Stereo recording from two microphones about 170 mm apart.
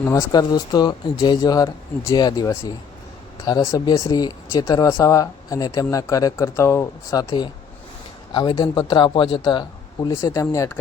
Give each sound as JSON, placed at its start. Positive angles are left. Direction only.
{"t": 0.0, "sound": "speech", "side_deg": 20}